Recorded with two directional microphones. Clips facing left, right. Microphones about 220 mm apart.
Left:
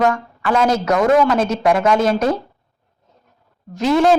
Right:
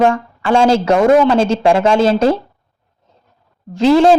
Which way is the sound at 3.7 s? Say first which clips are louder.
Right 5 dB; 30° right (ahead or behind).